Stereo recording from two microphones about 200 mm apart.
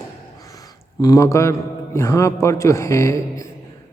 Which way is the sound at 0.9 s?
15° left (ahead or behind).